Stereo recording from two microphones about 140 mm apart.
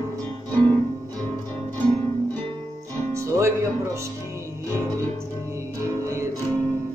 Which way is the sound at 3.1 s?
20° right (ahead or behind).